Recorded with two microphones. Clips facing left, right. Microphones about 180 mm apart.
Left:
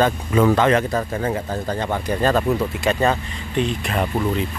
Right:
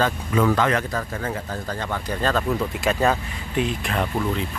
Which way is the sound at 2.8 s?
Centre (ahead or behind).